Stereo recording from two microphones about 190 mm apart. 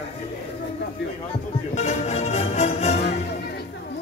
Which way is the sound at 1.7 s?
35° left (ahead or behind).